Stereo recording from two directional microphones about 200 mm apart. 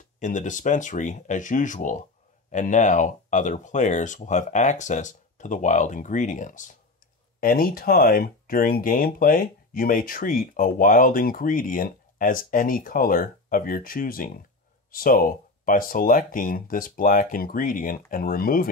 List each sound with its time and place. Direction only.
0.2 s speech: 40° left (ahead or behind)